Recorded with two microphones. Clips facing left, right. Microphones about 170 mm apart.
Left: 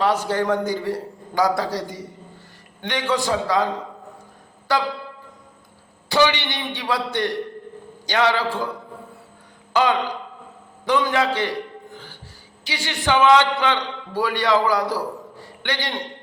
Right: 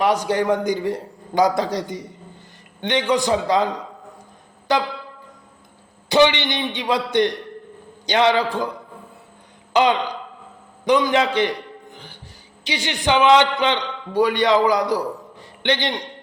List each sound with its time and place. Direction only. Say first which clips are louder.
0.0 s a man's voice: right 2 dB; 15° right (ahead or behind)
4.7 s a man's voice: right 2 dB; 20° right (ahead or behind)
6.1 s a man's voice: right 3 dB; 20° right (ahead or behind)
9.7 s a man's voice: right 2 dB; 20° right (ahead or behind)
10.8 s a sound: right 3 dB; 15° right (ahead or behind)
12.6 s a man's voice: right 2 dB; 20° right (ahead or behind)